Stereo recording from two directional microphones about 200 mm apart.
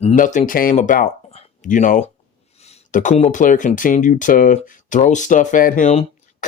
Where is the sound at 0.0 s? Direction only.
35° left (ahead or behind).